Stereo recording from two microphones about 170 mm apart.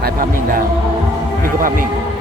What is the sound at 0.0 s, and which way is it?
Music, 60° right (ahead or behind).